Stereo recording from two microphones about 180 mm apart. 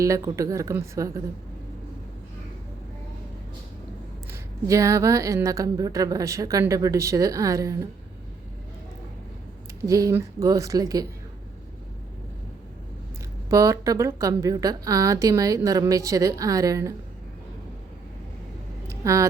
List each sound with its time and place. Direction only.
0.0 s a woman's voice: 20° right (ahead or behind)
4.3 s a woman's voice: 15° right (ahead or behind)
9.8 s a woman's voice: 20° right (ahead or behind)
13.5 s a woman's voice: 20° right (ahead or behind)
18.9 s a sound: 15° right (ahead or behind)